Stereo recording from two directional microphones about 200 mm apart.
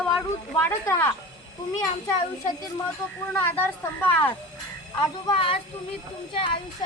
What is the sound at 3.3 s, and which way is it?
Speech, 10° left (ahead or behind).